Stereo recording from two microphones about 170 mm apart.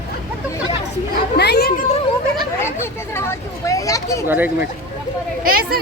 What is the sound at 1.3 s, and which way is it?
Chatter, 75° left (ahead or behind).